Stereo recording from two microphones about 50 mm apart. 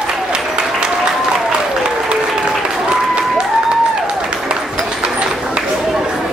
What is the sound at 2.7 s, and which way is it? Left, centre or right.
Applause, centre.